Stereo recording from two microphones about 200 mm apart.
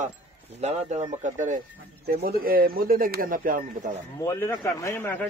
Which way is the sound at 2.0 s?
50° right (ahead or behind).